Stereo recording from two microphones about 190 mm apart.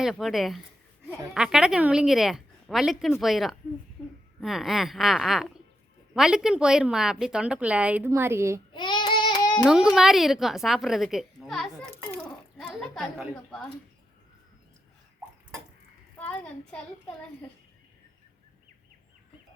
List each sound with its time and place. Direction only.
0.0 s a woman's voice: centre (ahead or behind)
4.0 s a sound: 10° left (ahead or behind)
4.4 s a woman's voice: centre (ahead or behind)
8.7 s child singing: 25° left (ahead or behind)
9.9 s a woman's voice: centre (ahead or behind)
16.1 s a woman's voice: 10° left (ahead or behind)